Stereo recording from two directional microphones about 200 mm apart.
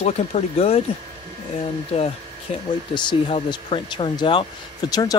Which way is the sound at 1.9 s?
30° left (ahead or behind).